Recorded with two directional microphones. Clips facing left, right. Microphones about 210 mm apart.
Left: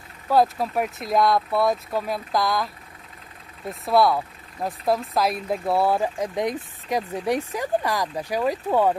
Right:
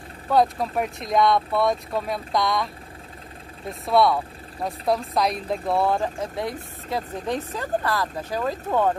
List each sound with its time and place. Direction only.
0.3 s speech: centre (ahead or behind)
3.8 s speech: centre (ahead or behind)